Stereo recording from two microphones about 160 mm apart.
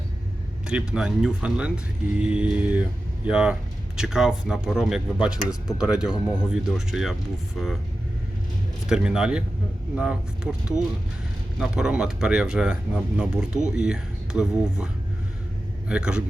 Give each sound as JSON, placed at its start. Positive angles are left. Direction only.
{"t": 0.7, "sound": "speech", "side_deg": -5}
{"t": 5.5, "sound": "speech", "side_deg": 25}
{"t": 5.8, "sound": "speech", "side_deg": -5}
{"t": 8.9, "sound": "speech", "side_deg": -5}
{"t": 15.9, "sound": "speech", "side_deg": -5}